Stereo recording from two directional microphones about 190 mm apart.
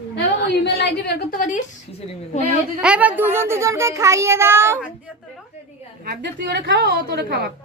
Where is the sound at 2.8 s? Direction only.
5° right (ahead or behind).